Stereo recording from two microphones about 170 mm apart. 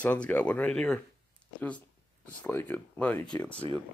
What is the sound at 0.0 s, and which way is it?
Speech, 10° left (ahead or behind).